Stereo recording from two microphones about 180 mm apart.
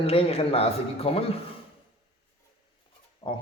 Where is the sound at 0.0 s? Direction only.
35° left (ahead or behind).